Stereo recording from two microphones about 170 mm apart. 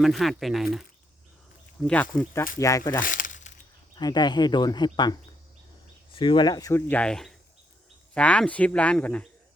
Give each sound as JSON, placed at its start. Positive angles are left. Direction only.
{"t": 0.0, "sound": "speech", "side_deg": 0}
{"t": 1.9, "sound": "speech", "side_deg": 10}
{"t": 2.6, "sound": "speech", "side_deg": 20}
{"t": 3.0, "sound": "crumpling", "side_deg": 50}
{"t": 3.9, "sound": "speech", "side_deg": 25}
{"t": 6.1, "sound": "speech", "side_deg": 30}